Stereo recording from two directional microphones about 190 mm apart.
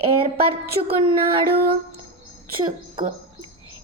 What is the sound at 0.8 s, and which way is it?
Music, 30° right (ahead or behind).